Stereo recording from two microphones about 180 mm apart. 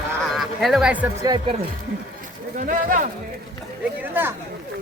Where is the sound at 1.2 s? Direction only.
20° right (ahead or behind).